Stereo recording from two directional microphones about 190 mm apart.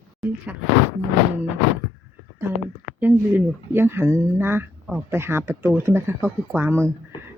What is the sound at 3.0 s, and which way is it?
Speech, 10° right (ahead or behind).